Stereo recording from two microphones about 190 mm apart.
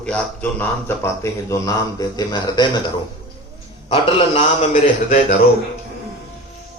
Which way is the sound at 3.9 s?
35° left (ahead or behind).